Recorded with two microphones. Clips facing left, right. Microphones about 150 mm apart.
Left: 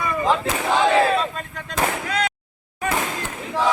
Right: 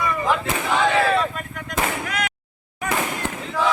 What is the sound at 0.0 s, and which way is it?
Artillery fire, 25° left (ahead or behind).